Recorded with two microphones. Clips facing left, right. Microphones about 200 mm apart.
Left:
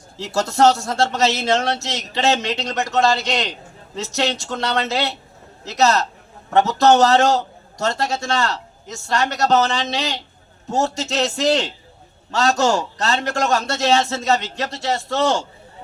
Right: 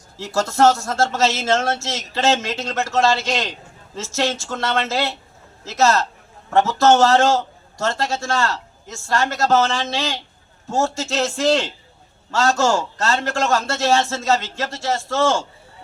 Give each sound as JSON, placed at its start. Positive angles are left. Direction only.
{"t": 0.2, "sound": "a man's voice", "side_deg": 20}